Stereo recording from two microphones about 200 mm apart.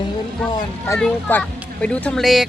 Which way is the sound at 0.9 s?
5° left (ahead or behind).